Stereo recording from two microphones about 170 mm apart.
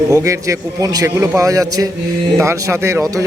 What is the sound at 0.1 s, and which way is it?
A man's voice, 20° right (ahead or behind).